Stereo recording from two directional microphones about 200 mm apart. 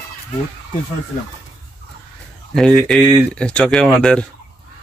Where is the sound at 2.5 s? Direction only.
5° left (ahead or behind).